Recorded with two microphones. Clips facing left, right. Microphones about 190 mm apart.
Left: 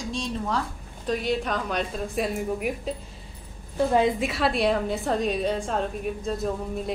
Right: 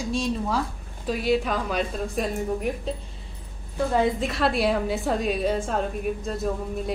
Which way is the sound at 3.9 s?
15° left (ahead or behind).